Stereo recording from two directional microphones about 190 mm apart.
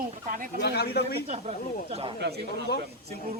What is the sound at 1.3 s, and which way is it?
Speech, 35° right (ahead or behind).